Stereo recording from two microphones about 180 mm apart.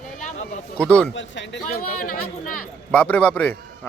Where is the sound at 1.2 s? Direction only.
90° left.